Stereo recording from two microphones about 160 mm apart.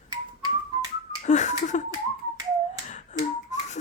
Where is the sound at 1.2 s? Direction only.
45° left (ahead or behind).